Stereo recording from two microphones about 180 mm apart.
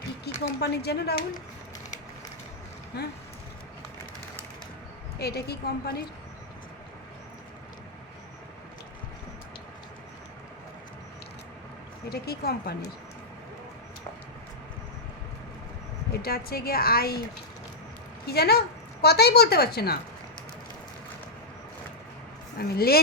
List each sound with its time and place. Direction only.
0.3 s a sound: 65° left (ahead or behind)
0.6 s a woman's voice: 65° left (ahead or behind)
2.9 s a woman's voice: 65° left (ahead or behind)
5.2 s a woman's voice: 60° left (ahead or behind)
12.0 s a woman's voice: 60° left (ahead or behind)
16.2 s a woman's voice: 55° left (ahead or behind)
18.3 s a woman's voice: 60° left (ahead or behind)
22.5 s a woman's voice: 55° left (ahead or behind)